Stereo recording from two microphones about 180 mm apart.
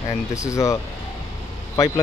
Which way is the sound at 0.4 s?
15° left (ahead or behind).